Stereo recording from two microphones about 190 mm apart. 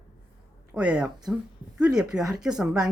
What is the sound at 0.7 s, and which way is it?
Speech, 5° right (ahead or behind).